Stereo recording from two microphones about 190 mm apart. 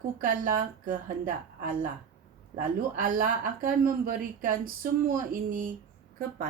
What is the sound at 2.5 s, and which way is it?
A woman's voice, 45° right (ahead or behind).